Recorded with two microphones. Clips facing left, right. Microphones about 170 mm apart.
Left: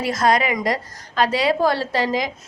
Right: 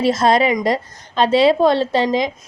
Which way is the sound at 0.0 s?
25° right (ahead or behind).